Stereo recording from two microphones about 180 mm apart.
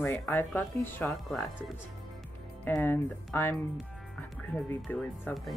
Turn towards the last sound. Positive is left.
turn(degrees=5)  # may be behind; listen again after turning